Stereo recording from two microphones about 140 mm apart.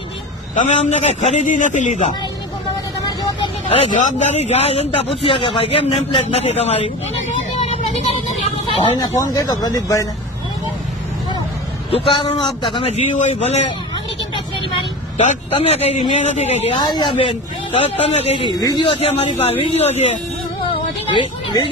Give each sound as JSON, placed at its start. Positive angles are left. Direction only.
{"t": 0.5, "sound": "a man's voice", "side_deg": 60}
{"t": 3.1, "sound": "vehicle", "side_deg": 35}
{"t": 3.8, "sound": "a man's voice", "side_deg": 60}
{"t": 7.3, "sound": "vehicle", "side_deg": 50}
{"t": 9.0, "sound": "speech", "side_deg": 25}
{"t": 11.9, "sound": "a man's voice", "side_deg": 40}
{"t": 13.1, "sound": "a man's voice", "side_deg": 60}
{"t": 15.5, "sound": "a man's voice", "side_deg": 45}
{"t": 17.0, "sound": "a man's voice", "side_deg": 35}
{"t": 21.2, "sound": "speech", "side_deg": 35}